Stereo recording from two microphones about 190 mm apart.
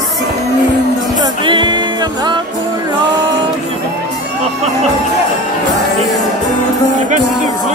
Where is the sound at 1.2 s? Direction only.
25° right (ahead or behind).